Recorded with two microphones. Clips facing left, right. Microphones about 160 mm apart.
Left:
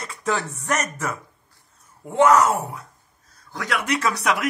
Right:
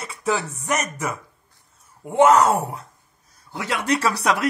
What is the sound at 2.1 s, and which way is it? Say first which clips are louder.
Speech: right 1 dB; 25° right (ahead or behind).